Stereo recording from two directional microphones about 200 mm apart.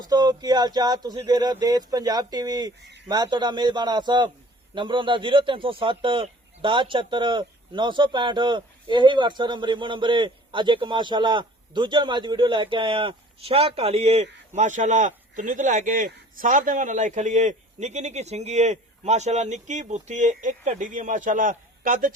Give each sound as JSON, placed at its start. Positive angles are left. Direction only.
{"t": 0.0, "sound": "a man's voice", "side_deg": -20}